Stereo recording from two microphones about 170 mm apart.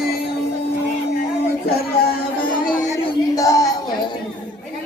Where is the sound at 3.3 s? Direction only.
20° left (ahead or behind).